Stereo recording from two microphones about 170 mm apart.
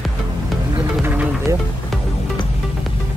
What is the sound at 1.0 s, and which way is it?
Music, 10° right (ahead or behind).